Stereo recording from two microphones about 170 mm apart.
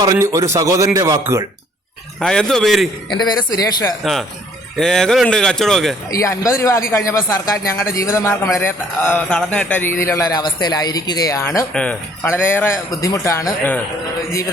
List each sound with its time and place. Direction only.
0.0 s a man's voice: 20° right (ahead or behind)
2.1 s a man's voice: 5° left (ahead or behind)
3.1 s speech: 25° left (ahead or behind)
4.0 s a man's voice: centre (ahead or behind)
6.1 s a man's voice: 20° left (ahead or behind)
11.7 s a man's voice: 5° left (ahead or behind)